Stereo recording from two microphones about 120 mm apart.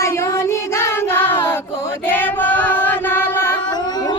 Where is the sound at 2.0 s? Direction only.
15° left (ahead or behind).